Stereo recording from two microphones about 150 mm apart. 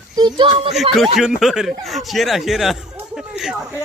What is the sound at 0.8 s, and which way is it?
Speech, centre (ahead or behind).